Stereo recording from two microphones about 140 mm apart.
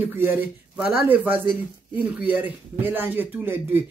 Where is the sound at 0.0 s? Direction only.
15° right (ahead or behind).